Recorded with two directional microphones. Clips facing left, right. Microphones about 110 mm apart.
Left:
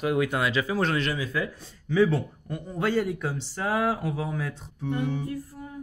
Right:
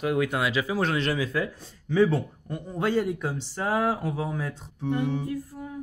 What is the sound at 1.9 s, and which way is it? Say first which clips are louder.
Speech: even; 25° right (ahead or behind).